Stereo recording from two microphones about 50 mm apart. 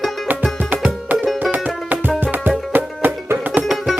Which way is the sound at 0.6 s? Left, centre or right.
Right.